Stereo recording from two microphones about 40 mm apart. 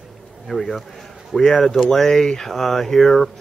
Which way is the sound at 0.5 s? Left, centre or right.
Centre.